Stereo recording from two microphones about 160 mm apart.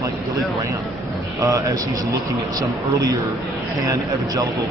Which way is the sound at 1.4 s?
20° right (ahead or behind).